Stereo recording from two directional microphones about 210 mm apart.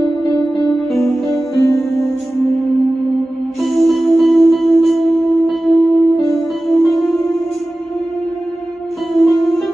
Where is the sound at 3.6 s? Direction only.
Centre (ahead or behind).